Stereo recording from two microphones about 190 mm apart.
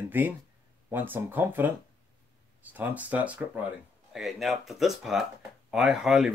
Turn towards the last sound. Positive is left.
turn(degrees=0)  # may be behind; listen again after turning